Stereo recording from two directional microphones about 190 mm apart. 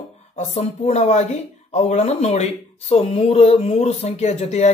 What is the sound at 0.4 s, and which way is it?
Speech, 35° left (ahead or behind).